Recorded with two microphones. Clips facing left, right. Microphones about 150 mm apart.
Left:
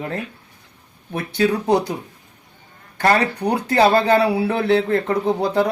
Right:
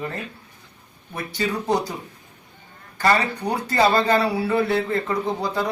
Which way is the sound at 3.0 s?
60° left (ahead or behind).